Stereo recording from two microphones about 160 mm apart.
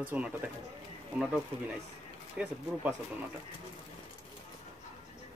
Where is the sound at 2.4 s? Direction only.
5° right (ahead or behind).